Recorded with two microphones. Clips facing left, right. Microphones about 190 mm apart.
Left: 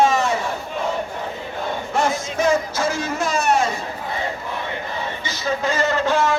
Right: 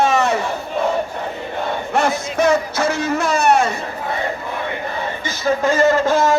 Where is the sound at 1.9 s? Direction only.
65° right (ahead or behind).